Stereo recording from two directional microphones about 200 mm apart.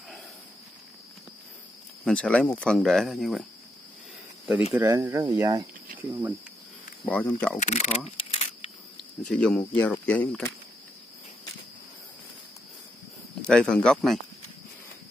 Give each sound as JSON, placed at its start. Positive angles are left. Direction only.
{"t": 2.0, "sound": "speech", "side_deg": 5}
{"t": 4.7, "sound": "speech", "side_deg": -15}
{"t": 7.1, "sound": "speech", "side_deg": 5}
{"t": 7.5, "sound": "speech", "side_deg": 35}
{"t": 8.2, "sound": "a sound", "side_deg": 30}
{"t": 9.3, "sound": "speech", "side_deg": 5}
{"t": 13.4, "sound": "speech", "side_deg": 5}